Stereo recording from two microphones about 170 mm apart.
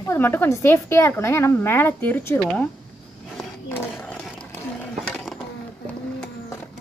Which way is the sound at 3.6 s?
15° left (ahead or behind).